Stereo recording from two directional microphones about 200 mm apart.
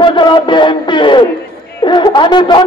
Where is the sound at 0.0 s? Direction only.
25° left (ahead or behind).